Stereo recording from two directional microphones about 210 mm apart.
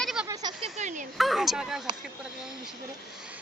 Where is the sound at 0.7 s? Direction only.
35° right (ahead or behind).